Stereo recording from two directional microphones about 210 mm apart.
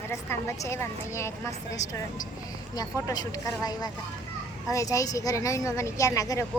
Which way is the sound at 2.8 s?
20° left (ahead or behind).